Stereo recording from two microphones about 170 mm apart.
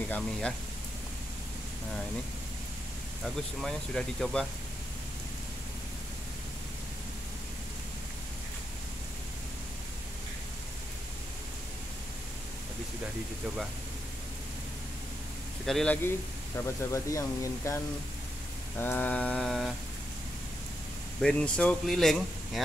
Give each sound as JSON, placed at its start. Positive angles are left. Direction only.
{"t": 0.1, "sound": "speech", "side_deg": 5}
{"t": 3.6, "sound": "speech", "side_deg": 0}
{"t": 15.6, "sound": "speech", "side_deg": 5}
{"t": 16.6, "sound": "speech", "side_deg": 15}
{"t": 18.8, "sound": "speech", "side_deg": 10}
{"t": 21.2, "sound": "speech", "side_deg": 5}